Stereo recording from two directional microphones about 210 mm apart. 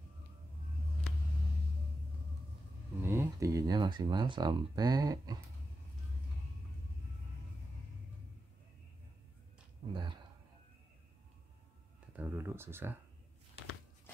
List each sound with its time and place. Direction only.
3.0 s speech: 10° right (ahead or behind)
9.8 s a sound: 25° right (ahead or behind)
12.1 s speech: 10° right (ahead or behind)